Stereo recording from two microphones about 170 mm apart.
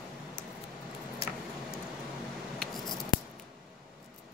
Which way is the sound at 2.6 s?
Centre (ahead or behind).